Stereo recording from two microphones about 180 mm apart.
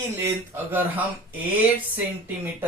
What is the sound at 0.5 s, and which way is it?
Speech, 10° right (ahead or behind).